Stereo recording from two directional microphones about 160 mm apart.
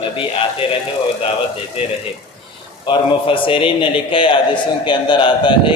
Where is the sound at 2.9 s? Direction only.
30° left (ahead or behind).